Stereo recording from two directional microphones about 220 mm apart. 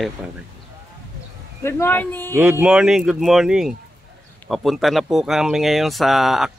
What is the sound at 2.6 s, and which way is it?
Speech, 5° right (ahead or behind).